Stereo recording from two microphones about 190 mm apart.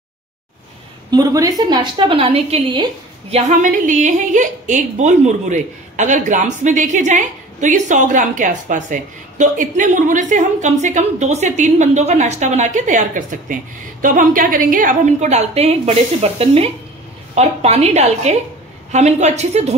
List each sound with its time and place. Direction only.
1.1 s a woman's voice: 20° right (ahead or behind); by 19.7 s 35° right (ahead or behind)